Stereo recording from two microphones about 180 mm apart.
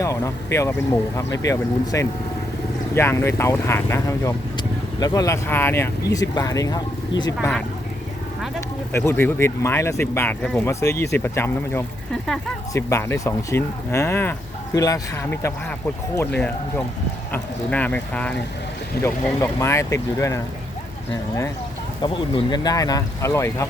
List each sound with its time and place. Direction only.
0.0 s speech: 15° left (ahead or behind)
8.9 s speech: 10° left (ahead or behind)
22.0 s speech: 25° left (ahead or behind)